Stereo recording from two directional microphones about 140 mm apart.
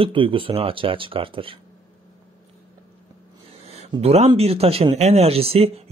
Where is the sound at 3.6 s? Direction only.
50° right (ahead or behind).